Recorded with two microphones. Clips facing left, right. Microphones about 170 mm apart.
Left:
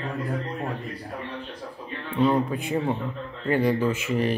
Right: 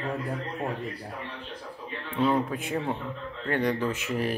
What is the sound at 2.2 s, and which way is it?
Speech, centre (ahead or behind).